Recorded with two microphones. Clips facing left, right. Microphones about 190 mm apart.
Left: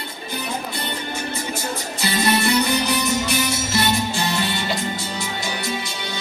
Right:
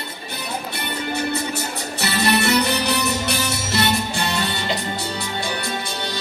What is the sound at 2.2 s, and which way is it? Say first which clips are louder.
Music: right 1 dB; 25° left (ahead or behind).